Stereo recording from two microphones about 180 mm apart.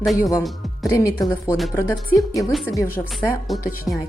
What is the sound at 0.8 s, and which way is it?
A woman's voice, 15° left (ahead or behind).